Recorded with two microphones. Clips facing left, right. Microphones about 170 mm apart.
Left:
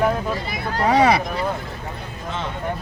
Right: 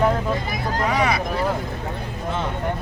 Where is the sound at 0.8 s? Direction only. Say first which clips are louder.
Left 6 dB; 30° left (ahead or behind).